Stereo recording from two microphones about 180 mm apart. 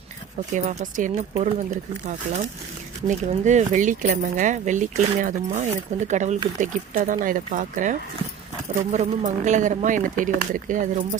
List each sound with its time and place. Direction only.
0.5 s speech: 40° right (ahead or behind)